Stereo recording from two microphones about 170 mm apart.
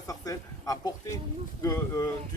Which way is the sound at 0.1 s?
20° left (ahead or behind).